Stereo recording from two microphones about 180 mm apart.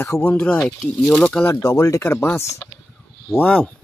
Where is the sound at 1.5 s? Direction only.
20° left (ahead or behind).